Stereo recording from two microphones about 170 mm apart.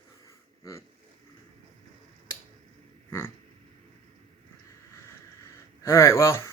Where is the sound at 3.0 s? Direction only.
15° left (ahead or behind).